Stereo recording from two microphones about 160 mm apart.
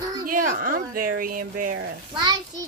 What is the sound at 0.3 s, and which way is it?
Speech, 60° right (ahead or behind).